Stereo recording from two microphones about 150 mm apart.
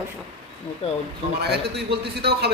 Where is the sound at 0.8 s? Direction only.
45° left (ahead or behind).